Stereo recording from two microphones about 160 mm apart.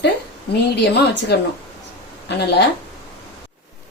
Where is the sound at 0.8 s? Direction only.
90° left.